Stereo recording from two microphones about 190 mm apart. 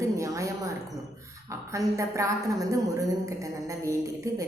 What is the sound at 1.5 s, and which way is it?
A woman's voice, 15° right (ahead or behind).